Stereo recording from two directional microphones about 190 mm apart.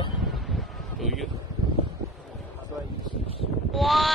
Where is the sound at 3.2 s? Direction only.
30° right (ahead or behind).